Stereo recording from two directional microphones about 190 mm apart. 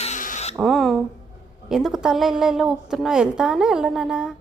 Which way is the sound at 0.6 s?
Centre (ahead or behind).